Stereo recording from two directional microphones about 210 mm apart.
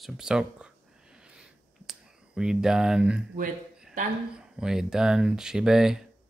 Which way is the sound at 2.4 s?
5° right (ahead or behind).